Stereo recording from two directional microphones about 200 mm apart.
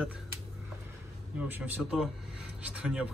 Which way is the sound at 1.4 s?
10° right (ahead or behind).